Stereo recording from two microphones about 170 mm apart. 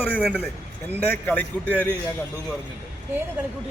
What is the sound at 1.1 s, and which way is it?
Speech, 10° left (ahead or behind).